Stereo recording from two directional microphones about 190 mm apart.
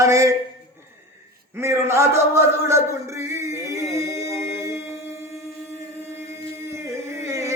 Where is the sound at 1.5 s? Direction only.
15° right (ahead or behind).